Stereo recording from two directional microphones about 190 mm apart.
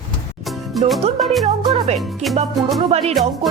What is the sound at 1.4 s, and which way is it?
Speech, 35° right (ahead or behind).